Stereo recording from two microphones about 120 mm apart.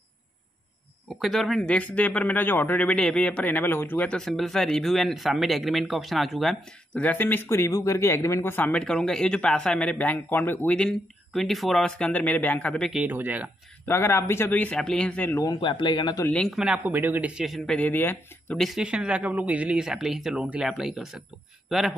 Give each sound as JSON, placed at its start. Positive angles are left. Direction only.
{"t": 1.2, "sound": "speech", "side_deg": 0}
{"t": 7.0, "sound": "speech", "side_deg": 15}
{"t": 13.0, "sound": "speech", "side_deg": -15}
{"t": 13.8, "sound": "speech", "side_deg": 20}
{"t": 15.6, "sound": "speech", "side_deg": 40}
{"t": 16.3, "sound": "speech", "side_deg": 5}
{"t": 16.5, "sound": "speech", "side_deg": -10}
{"t": 17.4, "sound": "speech", "side_deg": 0}
{"t": 17.7, "sound": "speech", "side_deg": 15}
{"t": 18.6, "sound": "speech", "side_deg": -5}